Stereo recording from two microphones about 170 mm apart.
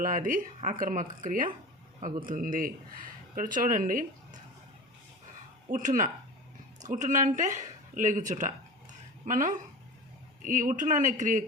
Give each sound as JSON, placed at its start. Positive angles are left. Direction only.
{"t": 0.0, "sound": "speech", "side_deg": -50}
{"t": 5.6, "sound": "speech", "side_deg": -50}